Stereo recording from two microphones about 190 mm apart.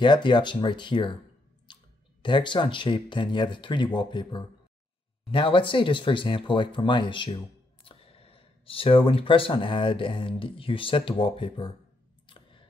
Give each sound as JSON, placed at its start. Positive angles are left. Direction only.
{"t": 0.0, "sound": "speech", "side_deg": 25}
{"t": 1.7, "sound": "clicking", "side_deg": 25}
{"t": 2.2, "sound": "speech", "side_deg": 25}
{"t": 12.3, "sound": "a sound", "side_deg": 25}